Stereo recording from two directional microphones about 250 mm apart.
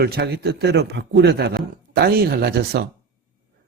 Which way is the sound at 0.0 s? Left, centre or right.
Right.